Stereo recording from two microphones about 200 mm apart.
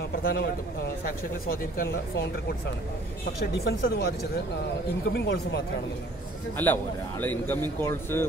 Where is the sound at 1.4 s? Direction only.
45° left (ahead or behind).